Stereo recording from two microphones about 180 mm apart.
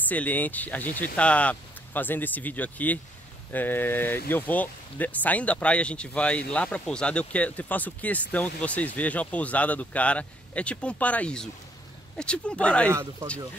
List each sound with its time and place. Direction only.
0.1 s speech: 10° left (ahead or behind)